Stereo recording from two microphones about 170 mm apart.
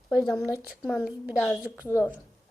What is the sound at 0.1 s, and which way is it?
A woman's voice, centre (ahead or behind).